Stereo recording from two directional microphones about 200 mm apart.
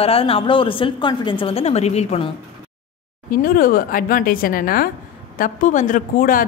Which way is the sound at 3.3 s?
45° left (ahead or behind).